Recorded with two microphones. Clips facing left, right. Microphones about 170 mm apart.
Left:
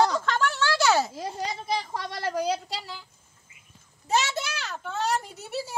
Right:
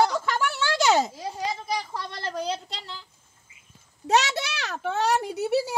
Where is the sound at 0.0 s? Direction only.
10° right (ahead or behind).